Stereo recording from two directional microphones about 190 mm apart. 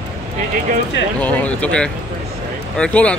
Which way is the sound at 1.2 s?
10° left (ahead or behind).